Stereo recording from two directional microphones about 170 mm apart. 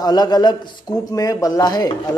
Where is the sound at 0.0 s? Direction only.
25° left (ahead or behind).